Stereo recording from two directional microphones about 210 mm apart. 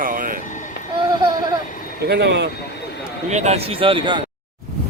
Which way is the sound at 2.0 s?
55° right (ahead or behind).